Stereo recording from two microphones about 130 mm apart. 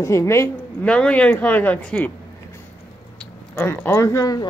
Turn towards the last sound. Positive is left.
turn(degrees=25)  # may be behind; listen again after turning